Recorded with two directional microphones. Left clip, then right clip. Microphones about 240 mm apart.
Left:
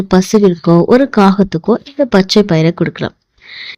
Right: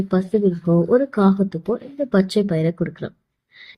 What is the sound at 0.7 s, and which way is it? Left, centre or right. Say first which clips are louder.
Speech: left 7 dB; left.